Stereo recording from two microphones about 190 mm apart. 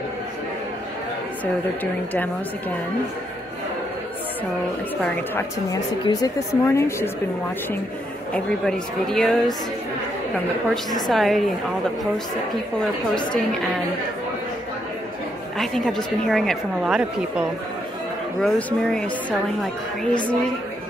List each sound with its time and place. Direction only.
5.3 s a woman's voice: 15° left (ahead or behind)
8.3 s a woman's voice: 5° left (ahead or behind)
11.1 s a woman's voice: centre (ahead or behind)
15.5 s a woman's voice: centre (ahead or behind)